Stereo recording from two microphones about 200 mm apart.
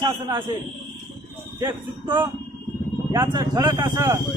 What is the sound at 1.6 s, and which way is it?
A man's voice, 25° right (ahead or behind).